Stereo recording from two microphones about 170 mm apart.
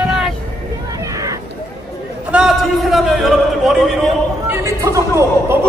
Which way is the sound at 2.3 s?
Centre (ahead or behind).